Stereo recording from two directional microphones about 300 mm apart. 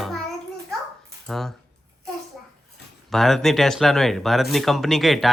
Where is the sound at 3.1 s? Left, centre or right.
Centre.